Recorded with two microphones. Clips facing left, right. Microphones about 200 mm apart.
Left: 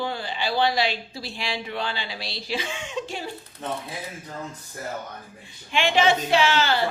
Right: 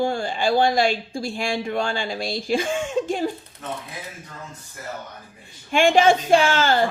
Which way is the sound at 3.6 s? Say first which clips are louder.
Left 1 dB; 30° left (ahead or behind).